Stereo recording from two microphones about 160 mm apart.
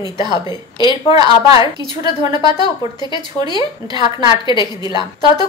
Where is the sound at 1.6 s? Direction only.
25° right (ahead or behind).